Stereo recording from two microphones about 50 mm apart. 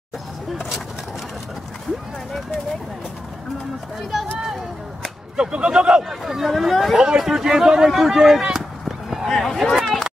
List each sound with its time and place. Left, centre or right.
0.6 s skateboard: centre
5.0 s speech: centre
6.0 s speech: centre
7.0 s speech: centre
8.8 s a sound: centre